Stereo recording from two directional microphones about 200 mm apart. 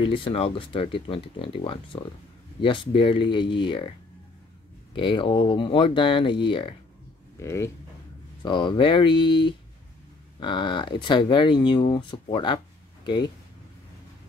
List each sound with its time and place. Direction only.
0.0 s speech: 25° left (ahead or behind)
4.9 s speech: 25° left (ahead or behind)
7.3 s speech: 15° left (ahead or behind)